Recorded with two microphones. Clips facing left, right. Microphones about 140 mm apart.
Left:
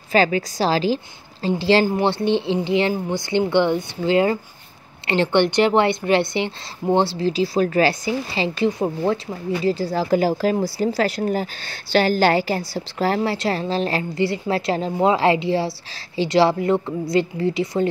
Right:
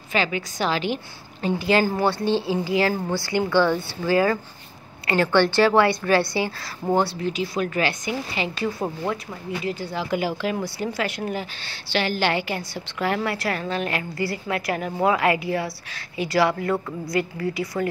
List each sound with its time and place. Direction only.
0.1 s a woman's voice: 35° left (ahead or behind)